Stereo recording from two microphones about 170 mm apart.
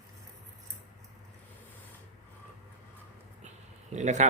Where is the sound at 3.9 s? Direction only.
45° right (ahead or behind).